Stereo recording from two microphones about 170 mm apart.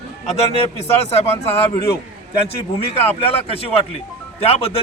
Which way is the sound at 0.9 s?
35° left (ahead or behind).